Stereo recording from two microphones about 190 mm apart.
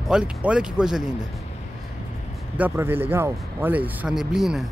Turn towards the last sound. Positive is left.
turn(degrees=0)  # may be behind; listen again after turning